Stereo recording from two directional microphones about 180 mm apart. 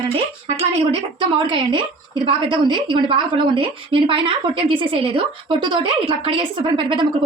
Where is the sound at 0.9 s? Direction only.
25° right (ahead or behind).